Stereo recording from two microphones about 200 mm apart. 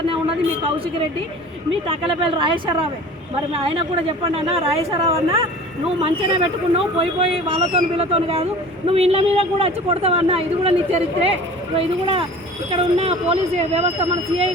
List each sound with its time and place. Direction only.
1.9 s a woman's voice: 25° right (ahead or behind)